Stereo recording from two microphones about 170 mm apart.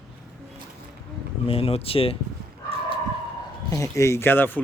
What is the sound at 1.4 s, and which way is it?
Speech, 35° left (ahead or behind).